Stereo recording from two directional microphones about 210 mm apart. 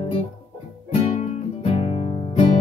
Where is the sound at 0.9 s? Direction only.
25° left (ahead or behind).